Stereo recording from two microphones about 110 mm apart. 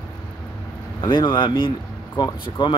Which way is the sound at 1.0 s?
45° left (ahead or behind).